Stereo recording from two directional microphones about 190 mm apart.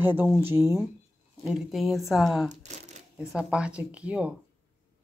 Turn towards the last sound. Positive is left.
turn(degrees=-5)  # may be behind; listen again after turning